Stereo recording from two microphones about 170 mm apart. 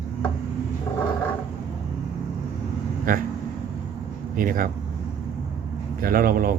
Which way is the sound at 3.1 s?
55° right (ahead or behind).